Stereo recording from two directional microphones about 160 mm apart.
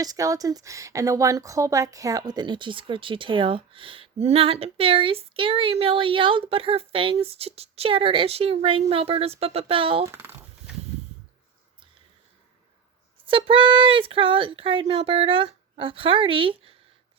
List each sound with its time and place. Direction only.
0.0 s speech: 20° right (ahead or behind)
10.1 s speech: 15° right (ahead or behind)
13.2 s speech: 35° right (ahead or behind)